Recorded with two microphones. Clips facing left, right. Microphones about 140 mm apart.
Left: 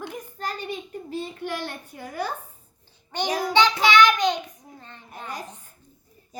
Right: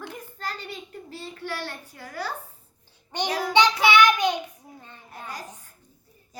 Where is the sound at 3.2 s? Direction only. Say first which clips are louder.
Left 2 dB; 15° left (ahead or behind).